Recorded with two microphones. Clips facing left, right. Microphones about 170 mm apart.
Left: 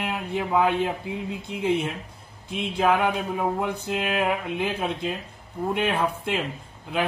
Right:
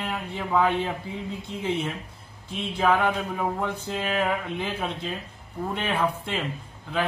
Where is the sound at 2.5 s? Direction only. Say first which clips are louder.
Left 1 dB; 15° left (ahead or behind).